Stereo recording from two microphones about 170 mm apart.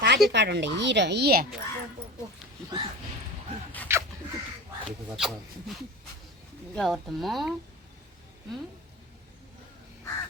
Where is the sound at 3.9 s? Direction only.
15° right (ahead or behind).